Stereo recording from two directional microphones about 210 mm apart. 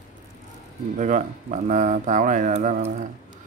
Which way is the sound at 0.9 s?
35° right (ahead or behind).